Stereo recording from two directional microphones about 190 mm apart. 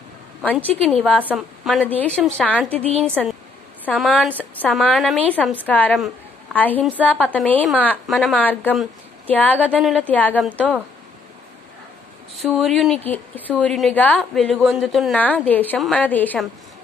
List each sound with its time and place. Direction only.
0.4 s a woman's voice: 10° left (ahead or behind)
1.2 s a woman's voice: 5° right (ahead or behind)
2.8 s a woman's voice: 35° right (ahead or behind)
3.1 s a woman's voice: 10° right (ahead or behind); by 7.1 s 10° left (ahead or behind)
7.1 s a woman's voice: 5° right (ahead or behind)
7.3 s speech: 10° left (ahead or behind)
12.4 s a woman's voice: centre (ahead or behind)